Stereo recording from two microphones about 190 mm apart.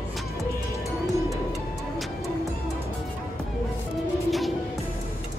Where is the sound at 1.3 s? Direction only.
Centre (ahead or behind).